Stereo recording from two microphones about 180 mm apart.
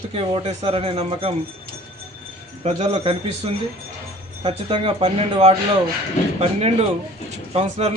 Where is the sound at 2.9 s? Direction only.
30° right (ahead or behind).